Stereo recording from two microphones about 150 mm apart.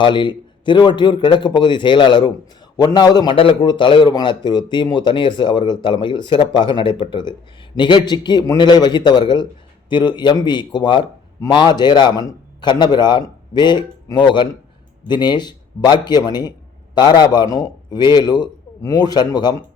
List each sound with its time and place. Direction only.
0.0 s a man's voice: 30° left (ahead or behind)